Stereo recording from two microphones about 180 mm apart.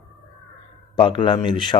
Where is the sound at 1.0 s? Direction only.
25° left (ahead or behind).